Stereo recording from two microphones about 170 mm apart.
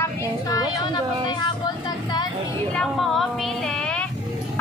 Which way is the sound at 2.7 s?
Centre (ahead or behind).